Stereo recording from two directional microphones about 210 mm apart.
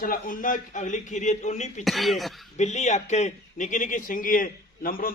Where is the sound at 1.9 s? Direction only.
Centre (ahead or behind).